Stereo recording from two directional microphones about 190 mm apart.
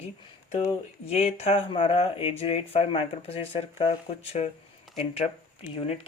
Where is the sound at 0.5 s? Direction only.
30° left (ahead or behind).